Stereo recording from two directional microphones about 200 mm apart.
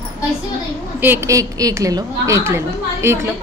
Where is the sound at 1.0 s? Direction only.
15° right (ahead or behind).